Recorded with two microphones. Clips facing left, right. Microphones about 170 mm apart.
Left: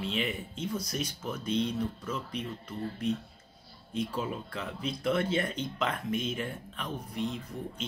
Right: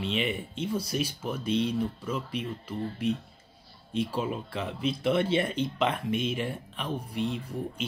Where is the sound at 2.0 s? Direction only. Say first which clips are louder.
Right 3 dB; 10° right (ahead or behind).